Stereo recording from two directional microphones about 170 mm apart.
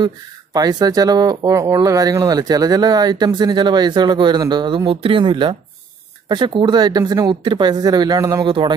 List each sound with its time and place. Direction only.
0.0 s speech: 25° right (ahead or behind)